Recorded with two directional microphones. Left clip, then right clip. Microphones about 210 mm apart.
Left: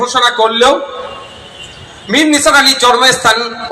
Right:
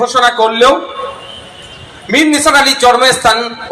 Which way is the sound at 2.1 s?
35° left (ahead or behind).